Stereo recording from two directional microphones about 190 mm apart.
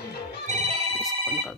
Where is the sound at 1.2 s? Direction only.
5° right (ahead or behind).